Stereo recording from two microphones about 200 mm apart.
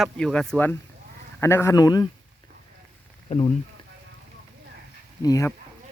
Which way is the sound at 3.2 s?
30° left (ahead or behind).